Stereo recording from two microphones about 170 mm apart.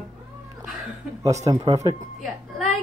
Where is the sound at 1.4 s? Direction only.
20° right (ahead or behind).